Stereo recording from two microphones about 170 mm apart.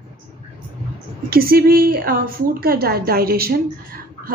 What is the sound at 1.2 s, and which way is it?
A woman's voice, 60° right (ahead or behind).